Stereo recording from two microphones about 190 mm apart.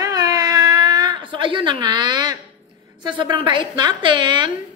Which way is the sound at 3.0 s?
25° right (ahead or behind).